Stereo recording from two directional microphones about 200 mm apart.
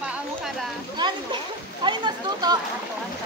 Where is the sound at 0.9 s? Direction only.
25° right (ahead or behind).